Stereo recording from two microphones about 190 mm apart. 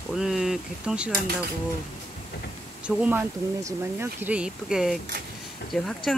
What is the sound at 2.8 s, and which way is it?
Speech, 5° right (ahead or behind).